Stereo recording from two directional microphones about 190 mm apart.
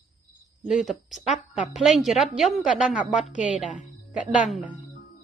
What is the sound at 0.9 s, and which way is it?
A woman's voice, centre (ahead or behind).